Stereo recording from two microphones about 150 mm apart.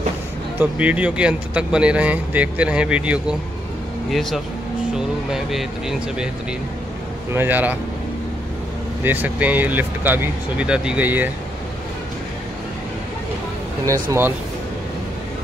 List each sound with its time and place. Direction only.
0.6 s speech: 10° right (ahead or behind)
7.3 s speech: 10° right (ahead or behind)
9.0 s speech: 10° right (ahead or behind)
13.8 s speech: 20° right (ahead or behind)